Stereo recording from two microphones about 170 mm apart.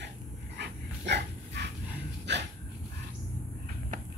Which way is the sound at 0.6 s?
90° right.